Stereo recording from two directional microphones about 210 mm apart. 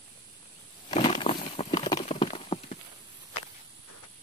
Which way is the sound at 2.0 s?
30° left (ahead or behind).